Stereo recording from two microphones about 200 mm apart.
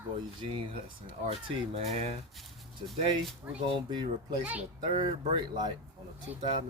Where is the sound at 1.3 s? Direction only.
30° right (ahead or behind).